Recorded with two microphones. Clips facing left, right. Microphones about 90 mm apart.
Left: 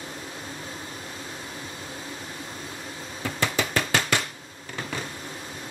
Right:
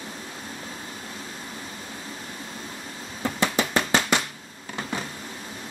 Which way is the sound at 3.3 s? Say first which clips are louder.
Right 2 dB; 20° right (ahead or behind).